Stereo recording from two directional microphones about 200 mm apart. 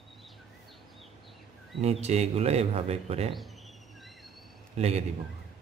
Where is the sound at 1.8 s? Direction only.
35° right (ahead or behind).